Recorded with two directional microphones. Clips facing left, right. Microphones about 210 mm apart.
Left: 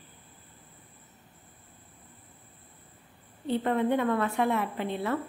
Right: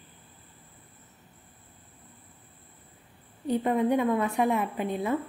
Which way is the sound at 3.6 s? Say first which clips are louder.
Right 2 dB; 15° right (ahead or behind).